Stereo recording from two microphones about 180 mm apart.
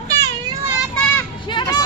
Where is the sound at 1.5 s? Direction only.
25° left (ahead or behind).